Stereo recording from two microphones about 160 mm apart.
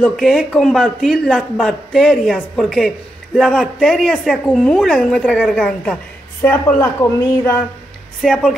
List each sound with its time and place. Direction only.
0.0 s a man's voice: 5° left (ahead or behind)
8.2 s a man's voice: centre (ahead or behind)